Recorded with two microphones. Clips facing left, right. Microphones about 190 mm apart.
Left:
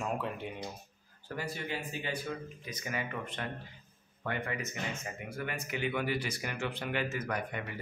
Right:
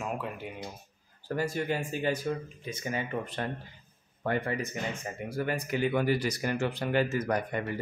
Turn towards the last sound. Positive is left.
turn(degrees=-40)  # may be behind; listen again after turning